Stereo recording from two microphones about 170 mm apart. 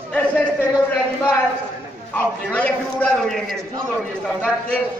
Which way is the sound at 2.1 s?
10° left (ahead or behind).